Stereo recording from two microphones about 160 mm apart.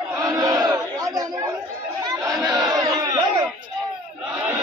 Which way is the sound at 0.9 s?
20° right (ahead or behind).